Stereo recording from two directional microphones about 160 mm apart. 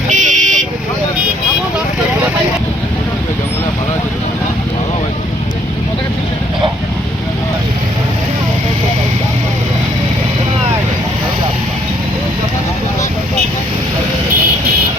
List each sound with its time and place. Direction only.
0.1 s vehicle: 50° right (ahead or behind)